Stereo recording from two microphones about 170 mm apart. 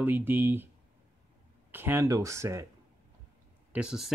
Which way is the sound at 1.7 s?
15° right (ahead or behind).